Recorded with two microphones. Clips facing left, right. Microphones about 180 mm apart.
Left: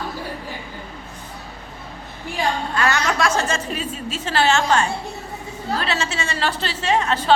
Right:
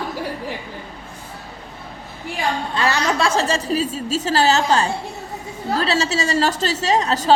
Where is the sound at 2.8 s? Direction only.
30° right (ahead or behind).